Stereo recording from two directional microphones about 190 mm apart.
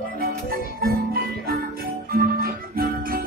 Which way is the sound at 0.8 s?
50° right (ahead or behind).